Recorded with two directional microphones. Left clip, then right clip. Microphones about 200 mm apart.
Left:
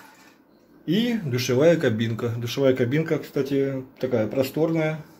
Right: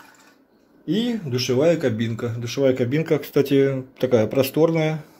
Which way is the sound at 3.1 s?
30° right (ahead or behind).